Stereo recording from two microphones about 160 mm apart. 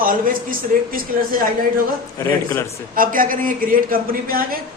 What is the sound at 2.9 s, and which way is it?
A man's voice, 60° right (ahead or behind).